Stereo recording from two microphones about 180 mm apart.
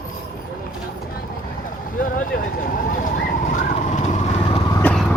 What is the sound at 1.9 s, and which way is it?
Vehicle, 50° left (ahead or behind).